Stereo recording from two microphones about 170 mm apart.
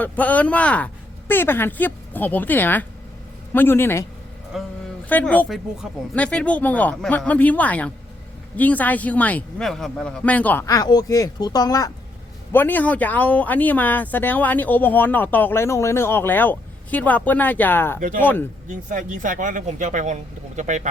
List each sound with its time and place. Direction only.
0.0 s speech: 10° left (ahead or behind)
4.5 s a sound: centre (ahead or behind)
5.0 s speech: 10° left (ahead or behind)
12.5 s speech: 10° left (ahead or behind)
18.9 s speech: 50° right (ahead or behind)